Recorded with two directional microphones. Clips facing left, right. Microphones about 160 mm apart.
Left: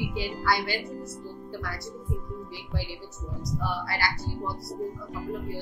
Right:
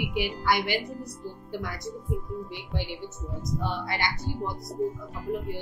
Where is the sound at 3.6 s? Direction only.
20° right (ahead or behind).